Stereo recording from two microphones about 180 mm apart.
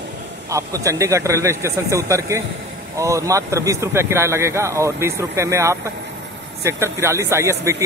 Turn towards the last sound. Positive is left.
turn(degrees=-15)  # may be behind; listen again after turning